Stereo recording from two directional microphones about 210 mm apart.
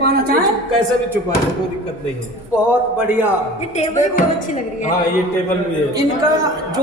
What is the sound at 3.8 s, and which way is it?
Music, 35° left (ahead or behind).